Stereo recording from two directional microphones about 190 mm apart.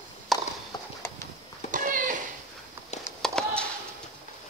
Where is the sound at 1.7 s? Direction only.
45° right (ahead or behind).